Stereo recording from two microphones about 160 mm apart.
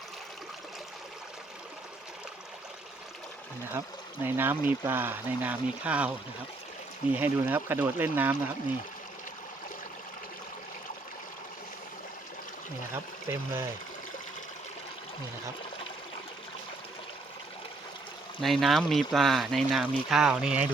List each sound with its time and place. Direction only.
3.7 s speech: 15° right (ahead or behind)
13.2 s speech: 15° right (ahead or behind)
18.3 s speech: centre (ahead or behind)